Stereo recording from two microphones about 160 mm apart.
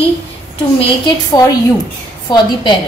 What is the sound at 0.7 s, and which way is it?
Speech, 30° left (ahead or behind).